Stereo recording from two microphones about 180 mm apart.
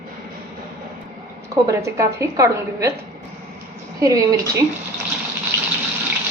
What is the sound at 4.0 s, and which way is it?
Speech, 20° right (ahead or behind).